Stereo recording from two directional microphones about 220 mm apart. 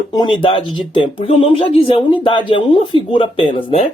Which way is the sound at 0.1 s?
20° left (ahead or behind).